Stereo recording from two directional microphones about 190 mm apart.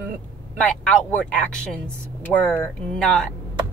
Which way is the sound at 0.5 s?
5° left (ahead or behind).